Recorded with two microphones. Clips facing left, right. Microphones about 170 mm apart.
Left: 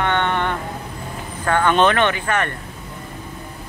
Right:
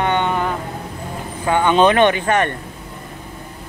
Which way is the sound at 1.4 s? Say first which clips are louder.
Right 2 dB; 15° right (ahead or behind).